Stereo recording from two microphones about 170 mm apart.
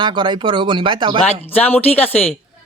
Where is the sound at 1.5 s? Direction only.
10° left (ahead or behind).